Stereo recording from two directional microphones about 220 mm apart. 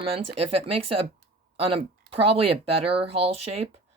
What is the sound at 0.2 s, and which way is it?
Speech, 90° right.